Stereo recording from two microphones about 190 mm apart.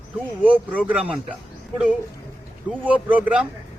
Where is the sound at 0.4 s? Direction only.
10° right (ahead or behind).